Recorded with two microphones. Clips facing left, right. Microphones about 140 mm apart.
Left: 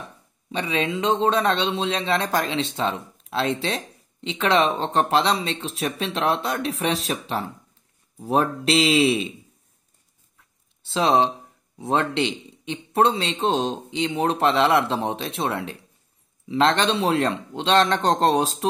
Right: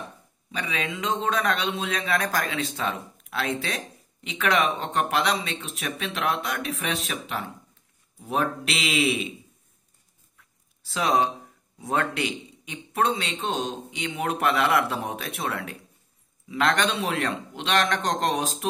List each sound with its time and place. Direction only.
0.5 s speech: 30° left (ahead or behind)
10.8 s speech: 25° left (ahead or behind)